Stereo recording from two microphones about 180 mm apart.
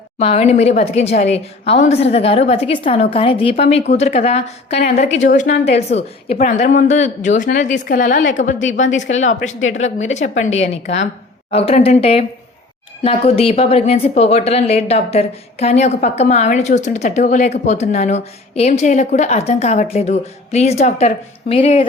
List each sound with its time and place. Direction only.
0.2 s speech: 35° left (ahead or behind)